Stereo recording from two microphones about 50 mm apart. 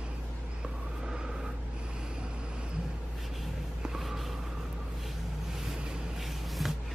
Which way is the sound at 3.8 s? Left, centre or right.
Centre.